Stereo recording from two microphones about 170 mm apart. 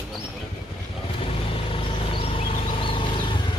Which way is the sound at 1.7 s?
30° left (ahead or behind).